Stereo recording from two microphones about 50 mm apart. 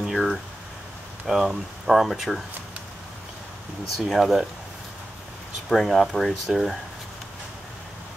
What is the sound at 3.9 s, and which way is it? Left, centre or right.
Speech, centre.